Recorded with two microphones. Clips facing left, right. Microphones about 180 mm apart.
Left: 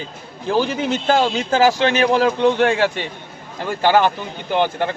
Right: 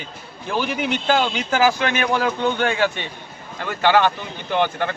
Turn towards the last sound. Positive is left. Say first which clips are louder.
# left 2 dB
turn(degrees=30)  # may be behind; listen again after turning